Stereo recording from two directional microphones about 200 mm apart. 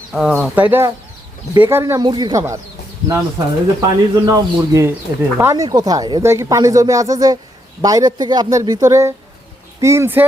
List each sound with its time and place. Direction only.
0.1 s speech: centre (ahead or behind)